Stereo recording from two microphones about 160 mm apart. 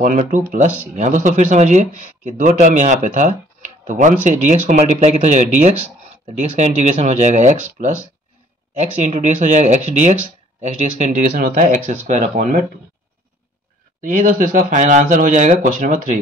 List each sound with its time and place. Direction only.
0.0 s speech: 55° right (ahead or behind)
11.8 s speech: 40° right (ahead or behind)
14.0 s speech: 55° right (ahead or behind)